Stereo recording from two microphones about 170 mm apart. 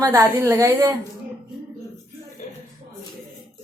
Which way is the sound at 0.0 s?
20° right (ahead or behind).